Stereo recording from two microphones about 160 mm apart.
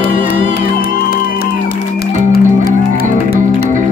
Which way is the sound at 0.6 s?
70° left (ahead or behind).